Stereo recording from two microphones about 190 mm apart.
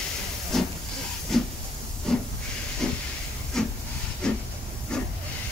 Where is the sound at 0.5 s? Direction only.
Centre (ahead or behind).